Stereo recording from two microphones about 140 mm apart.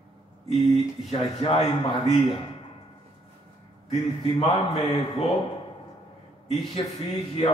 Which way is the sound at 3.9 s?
50° left (ahead or behind).